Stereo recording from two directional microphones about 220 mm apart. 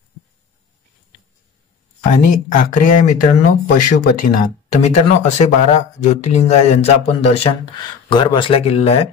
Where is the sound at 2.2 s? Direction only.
35° left (ahead or behind).